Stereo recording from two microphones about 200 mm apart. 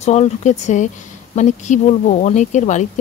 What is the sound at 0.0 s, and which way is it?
Speech, 35° left (ahead or behind).